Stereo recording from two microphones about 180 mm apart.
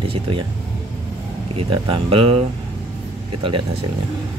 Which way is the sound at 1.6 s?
30° right (ahead or behind).